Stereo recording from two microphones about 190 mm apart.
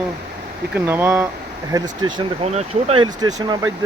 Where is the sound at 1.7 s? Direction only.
25° right (ahead or behind).